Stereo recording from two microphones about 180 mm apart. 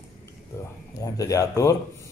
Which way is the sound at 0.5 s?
15° left (ahead or behind).